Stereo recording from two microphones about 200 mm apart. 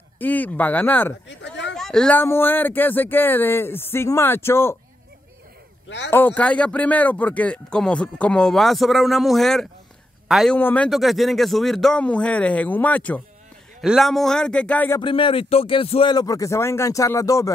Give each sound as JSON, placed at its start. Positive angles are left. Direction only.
{"t": 0.2, "sound": "speech", "side_deg": 10}
{"t": 1.2, "sound": "a sound", "side_deg": 60}
{"t": 1.8, "sound": "speech", "side_deg": 5}
{"t": 6.0, "sound": "speech", "side_deg": 10}
{"t": 15.0, "sound": "speech", "side_deg": 25}